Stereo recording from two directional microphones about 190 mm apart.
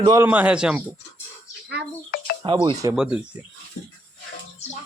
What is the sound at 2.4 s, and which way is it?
Speech, 25° right (ahead or behind).